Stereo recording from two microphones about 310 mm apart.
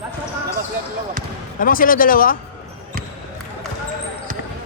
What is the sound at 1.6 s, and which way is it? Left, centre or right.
Speech, left.